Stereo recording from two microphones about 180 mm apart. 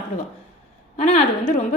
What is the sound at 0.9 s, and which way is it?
Speech, 35° left (ahead or behind).